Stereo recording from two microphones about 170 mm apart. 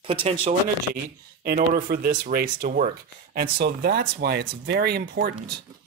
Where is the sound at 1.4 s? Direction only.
60° right (ahead or behind).